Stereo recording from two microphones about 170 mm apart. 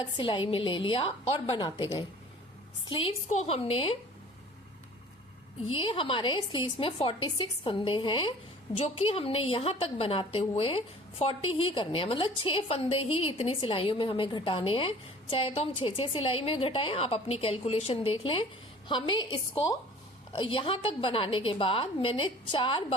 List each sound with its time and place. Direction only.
0.0 s a woman's voice: 30° left (ahead or behind)
5.7 s a woman's voice: 30° left (ahead or behind)